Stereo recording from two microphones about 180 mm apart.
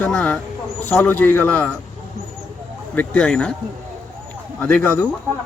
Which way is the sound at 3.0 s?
5° left (ahead or behind).